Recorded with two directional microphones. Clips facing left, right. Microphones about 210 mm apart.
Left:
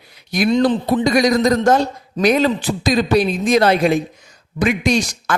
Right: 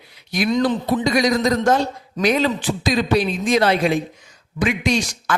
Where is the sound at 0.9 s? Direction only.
45° left (ahead or behind).